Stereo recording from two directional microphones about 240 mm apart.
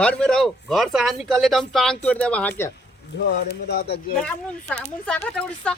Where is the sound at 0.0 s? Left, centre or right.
Centre.